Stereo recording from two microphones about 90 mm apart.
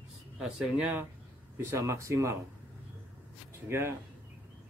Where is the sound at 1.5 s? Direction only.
30° right (ahead or behind).